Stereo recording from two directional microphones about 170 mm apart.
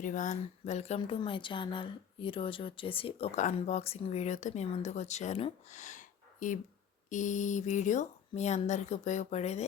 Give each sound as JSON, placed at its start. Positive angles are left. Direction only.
{"t": 0.0, "sound": "a woman's voice", "side_deg": 50}